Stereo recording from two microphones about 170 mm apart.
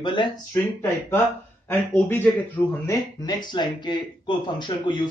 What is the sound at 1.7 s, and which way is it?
Speech, 10° left (ahead or behind).